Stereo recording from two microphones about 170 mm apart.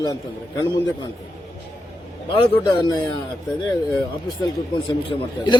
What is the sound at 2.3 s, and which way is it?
Speech, 30° left (ahead or behind).